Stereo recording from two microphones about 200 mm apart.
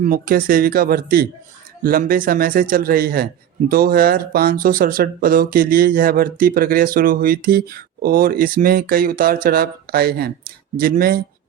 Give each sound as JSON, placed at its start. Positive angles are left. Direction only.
{"t": 0.0, "sound": "speech", "side_deg": -45}